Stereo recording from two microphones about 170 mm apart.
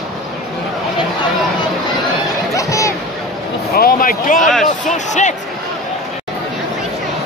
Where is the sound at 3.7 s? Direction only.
60° left (ahead or behind).